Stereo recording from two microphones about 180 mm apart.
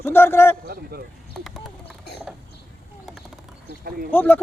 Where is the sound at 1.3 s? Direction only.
Centre (ahead or behind).